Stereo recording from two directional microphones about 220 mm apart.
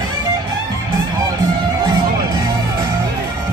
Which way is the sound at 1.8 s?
20° right (ahead or behind).